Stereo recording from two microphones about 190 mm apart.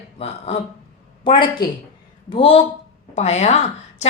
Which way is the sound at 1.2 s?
25° left (ahead or behind).